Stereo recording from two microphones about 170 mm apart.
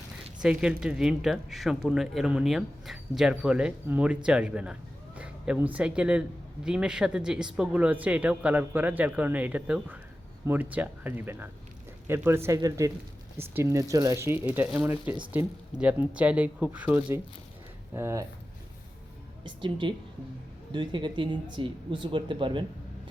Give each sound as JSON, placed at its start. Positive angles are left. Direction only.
{"t": 0.4, "sound": "speech", "side_deg": -5}
{"t": 19.8, "sound": "speech", "side_deg": -30}